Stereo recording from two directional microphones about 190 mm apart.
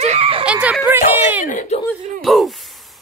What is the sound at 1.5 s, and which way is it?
Speech, 45° left (ahead or behind).